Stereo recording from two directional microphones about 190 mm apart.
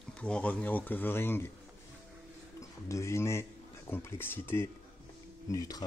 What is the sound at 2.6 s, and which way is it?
Speech, 15° left (ahead or behind).